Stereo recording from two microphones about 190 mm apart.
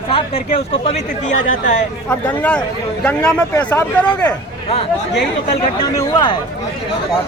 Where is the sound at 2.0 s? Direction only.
10° left (ahead or behind).